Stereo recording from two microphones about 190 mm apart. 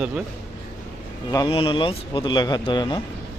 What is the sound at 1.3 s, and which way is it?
A man's voice, 25° left (ahead or behind).